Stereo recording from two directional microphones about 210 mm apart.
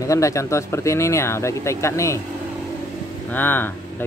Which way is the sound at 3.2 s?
10° left (ahead or behind).